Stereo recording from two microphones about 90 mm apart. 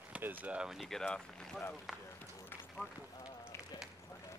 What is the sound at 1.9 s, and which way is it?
Run, centre (ahead or behind).